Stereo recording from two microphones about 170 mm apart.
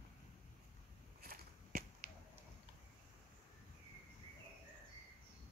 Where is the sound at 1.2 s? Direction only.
60° right (ahead or behind).